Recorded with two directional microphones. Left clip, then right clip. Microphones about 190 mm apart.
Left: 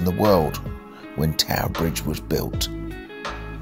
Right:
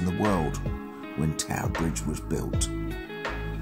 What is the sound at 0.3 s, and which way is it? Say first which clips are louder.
Speech: left 9 dB; 35° left (ahead or behind).